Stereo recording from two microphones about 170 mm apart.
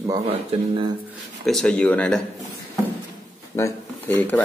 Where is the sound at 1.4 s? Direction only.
5° left (ahead or behind).